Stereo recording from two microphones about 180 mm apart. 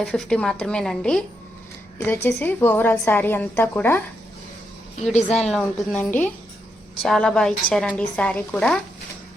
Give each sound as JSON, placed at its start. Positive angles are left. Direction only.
{"t": 0.0, "sound": "a woman's voice", "side_deg": 5}
{"t": 5.1, "sound": "speech", "side_deg": 35}
{"t": 5.5, "sound": "a woman's voice", "side_deg": 5}